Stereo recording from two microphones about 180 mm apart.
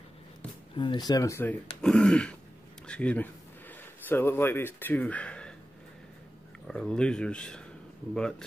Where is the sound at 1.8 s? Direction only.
5° left (ahead or behind).